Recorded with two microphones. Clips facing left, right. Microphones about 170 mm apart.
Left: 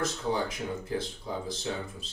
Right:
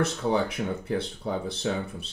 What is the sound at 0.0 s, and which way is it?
Speech, 65° right (ahead or behind).